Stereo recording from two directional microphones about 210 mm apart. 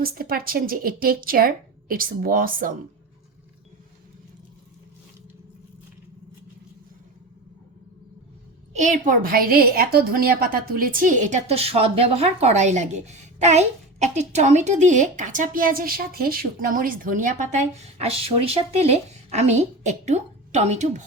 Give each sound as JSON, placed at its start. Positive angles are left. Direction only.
{"t": 0.0, "sound": "speech", "side_deg": -45}
{"t": 8.7, "sound": "a woman's voice", "side_deg": -35}